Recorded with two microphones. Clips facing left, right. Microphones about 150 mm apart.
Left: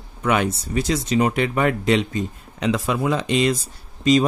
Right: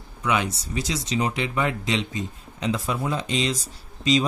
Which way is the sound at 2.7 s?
80° left.